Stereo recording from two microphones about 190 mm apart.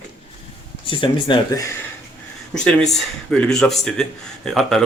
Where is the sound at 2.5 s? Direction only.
5° left (ahead or behind).